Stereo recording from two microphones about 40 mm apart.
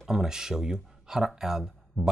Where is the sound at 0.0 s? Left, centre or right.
Centre.